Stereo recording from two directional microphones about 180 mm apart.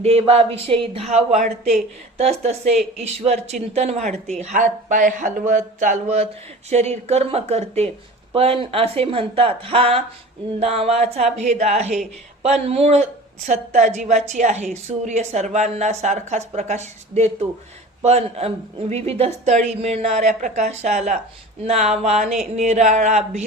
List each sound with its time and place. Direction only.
0.0 s speech: 35° right (ahead or behind)